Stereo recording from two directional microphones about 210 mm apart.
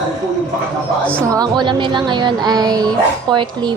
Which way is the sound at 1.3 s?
20° right (ahead or behind).